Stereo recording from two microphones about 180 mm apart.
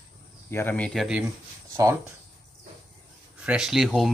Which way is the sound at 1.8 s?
15° right (ahead or behind).